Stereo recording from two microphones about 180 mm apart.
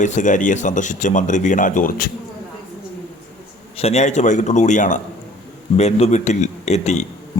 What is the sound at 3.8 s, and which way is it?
A man's voice, 35° left (ahead or behind).